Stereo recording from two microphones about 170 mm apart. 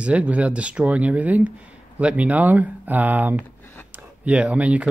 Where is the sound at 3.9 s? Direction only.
5° right (ahead or behind).